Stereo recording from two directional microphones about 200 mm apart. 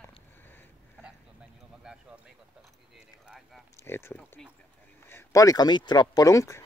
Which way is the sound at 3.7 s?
10° left (ahead or behind).